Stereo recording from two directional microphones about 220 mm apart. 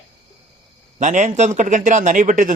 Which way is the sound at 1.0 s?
35° right (ahead or behind).